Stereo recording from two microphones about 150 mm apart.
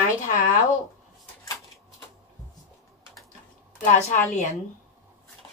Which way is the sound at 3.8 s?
55° left (ahead or behind).